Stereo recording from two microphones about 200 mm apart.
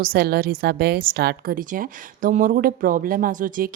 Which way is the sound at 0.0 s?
50° right (ahead or behind).